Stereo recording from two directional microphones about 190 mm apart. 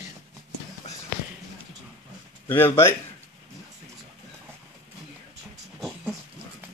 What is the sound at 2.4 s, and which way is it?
Speech, 10° left (ahead or behind).